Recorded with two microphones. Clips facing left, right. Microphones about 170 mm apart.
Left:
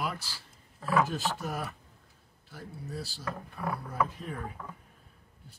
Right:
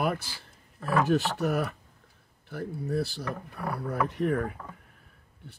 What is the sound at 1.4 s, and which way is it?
Speech, 65° right (ahead or behind).